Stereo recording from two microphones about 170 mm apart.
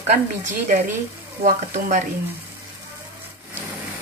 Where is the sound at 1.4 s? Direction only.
45° right (ahead or behind).